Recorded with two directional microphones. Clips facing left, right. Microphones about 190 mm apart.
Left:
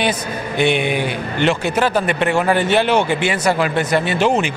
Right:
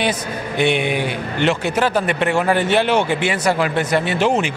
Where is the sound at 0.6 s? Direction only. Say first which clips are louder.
Left 1 dB; 20° left (ahead or behind).